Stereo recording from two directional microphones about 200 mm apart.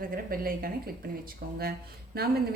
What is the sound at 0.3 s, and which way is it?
Speech, 45° right (ahead or behind).